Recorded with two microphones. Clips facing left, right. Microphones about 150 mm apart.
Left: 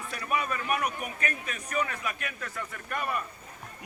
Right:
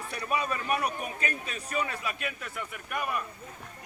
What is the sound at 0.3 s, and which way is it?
A man's voice, 25° right (ahead or behind).